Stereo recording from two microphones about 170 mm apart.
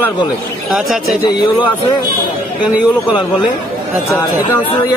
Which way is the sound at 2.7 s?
10° right (ahead or behind).